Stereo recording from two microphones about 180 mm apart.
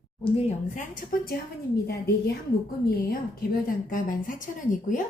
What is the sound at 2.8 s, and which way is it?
Speech, 55° left (ahead or behind).